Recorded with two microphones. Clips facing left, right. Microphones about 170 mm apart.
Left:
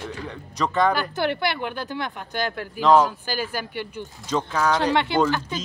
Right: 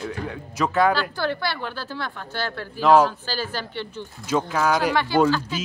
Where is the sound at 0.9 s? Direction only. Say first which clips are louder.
Left 1 dB; 20° left (ahead or behind).